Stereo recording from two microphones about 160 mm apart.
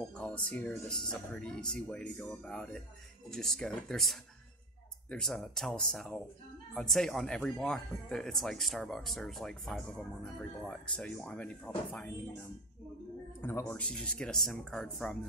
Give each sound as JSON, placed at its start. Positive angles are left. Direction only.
{"t": 0.1, "sound": "speech", "side_deg": 5}
{"t": 13.4, "sound": "speech", "side_deg": 10}